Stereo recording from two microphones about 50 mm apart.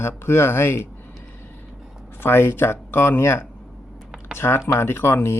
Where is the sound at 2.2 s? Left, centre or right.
Left.